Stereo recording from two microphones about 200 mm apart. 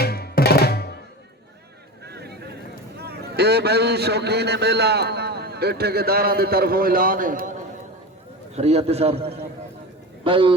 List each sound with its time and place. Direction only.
0.0 s music: 50° left (ahead or behind)
2.0 s vehicle: 55° right (ahead or behind)
3.0 s a man's voice: 55° right (ahead or behind)
8.5 s a man's voice: 30° right (ahead or behind)